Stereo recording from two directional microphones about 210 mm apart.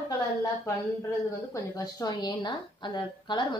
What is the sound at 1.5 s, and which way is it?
A woman's voice, 15° left (ahead or behind).